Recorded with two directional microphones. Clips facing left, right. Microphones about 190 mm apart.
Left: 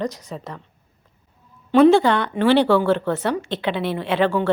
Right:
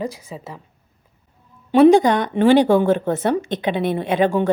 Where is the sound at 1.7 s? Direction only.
15° right (ahead or behind).